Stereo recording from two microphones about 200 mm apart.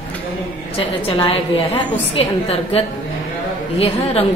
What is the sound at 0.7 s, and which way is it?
A woman's voice, 30° left (ahead or behind).